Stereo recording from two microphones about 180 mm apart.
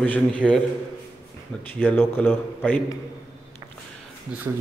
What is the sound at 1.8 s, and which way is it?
A man's voice, 10° left (ahead or behind).